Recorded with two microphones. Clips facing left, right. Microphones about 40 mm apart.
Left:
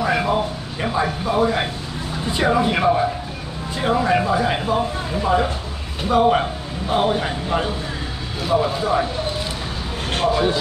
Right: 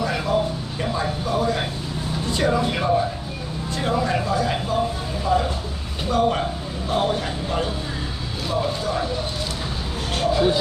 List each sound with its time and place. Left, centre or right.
0.0 s a sound: left
2.2 s speech: left
10.1 s speech: left